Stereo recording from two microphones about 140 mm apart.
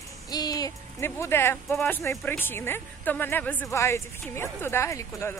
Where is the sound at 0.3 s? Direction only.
30° left (ahead or behind).